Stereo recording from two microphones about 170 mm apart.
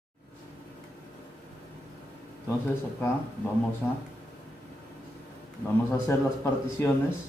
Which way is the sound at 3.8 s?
5° left (ahead or behind).